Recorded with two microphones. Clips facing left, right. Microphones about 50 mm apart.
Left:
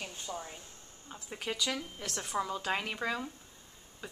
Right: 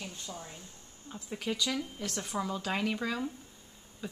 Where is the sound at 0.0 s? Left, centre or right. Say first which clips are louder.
Even; left.